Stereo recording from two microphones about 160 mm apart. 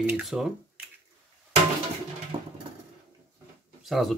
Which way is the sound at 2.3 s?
45° right (ahead or behind).